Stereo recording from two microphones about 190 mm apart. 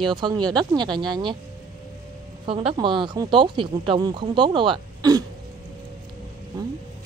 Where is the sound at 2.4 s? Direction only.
30° right (ahead or behind).